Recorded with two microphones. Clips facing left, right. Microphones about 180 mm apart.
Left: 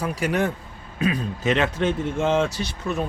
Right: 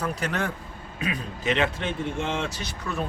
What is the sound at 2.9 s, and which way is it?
Speech, 20° left (ahead or behind).